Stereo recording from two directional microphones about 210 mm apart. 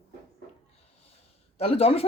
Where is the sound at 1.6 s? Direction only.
30° left (ahead or behind).